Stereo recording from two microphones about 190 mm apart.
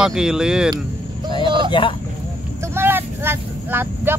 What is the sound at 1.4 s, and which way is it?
Vehicle, 25° right (ahead or behind).